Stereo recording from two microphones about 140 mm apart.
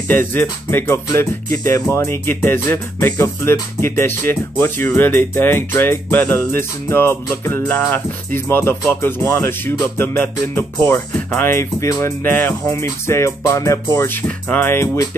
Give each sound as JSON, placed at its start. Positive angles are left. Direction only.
{"t": 0.1, "sound": "speech", "side_deg": 15}